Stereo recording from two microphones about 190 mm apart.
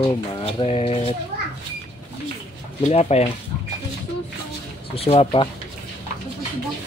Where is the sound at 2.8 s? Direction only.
35° left (ahead or behind).